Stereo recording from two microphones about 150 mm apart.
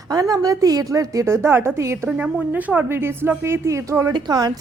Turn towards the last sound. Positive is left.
turn(degrees=-25)  # may be behind; listen again after turning